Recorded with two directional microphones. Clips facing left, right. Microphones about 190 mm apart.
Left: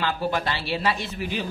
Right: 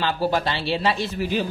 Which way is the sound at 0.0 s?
30° right (ahead or behind).